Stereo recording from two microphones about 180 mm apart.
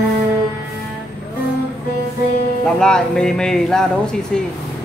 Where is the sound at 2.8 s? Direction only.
5° left (ahead or behind).